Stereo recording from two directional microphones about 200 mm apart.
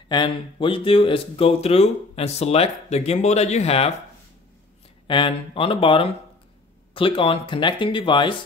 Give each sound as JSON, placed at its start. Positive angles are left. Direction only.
{"t": 0.1, "sound": "speech", "side_deg": 25}
{"t": 5.0, "sound": "speech", "side_deg": 25}